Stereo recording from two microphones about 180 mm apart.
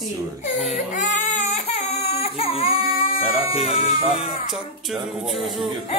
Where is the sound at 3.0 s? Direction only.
30° left (ahead or behind).